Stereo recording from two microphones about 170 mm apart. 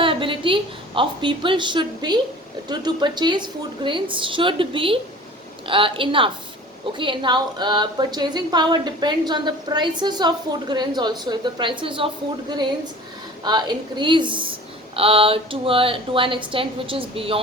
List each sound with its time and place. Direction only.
0.0 s a sound: 30° right (ahead or behind)
2.6 s a woman's voice: 25° right (ahead or behind)
13.4 s a woman's voice: 25° right (ahead or behind)